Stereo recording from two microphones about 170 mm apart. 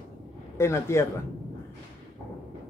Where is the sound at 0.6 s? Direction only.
15° left (ahead or behind).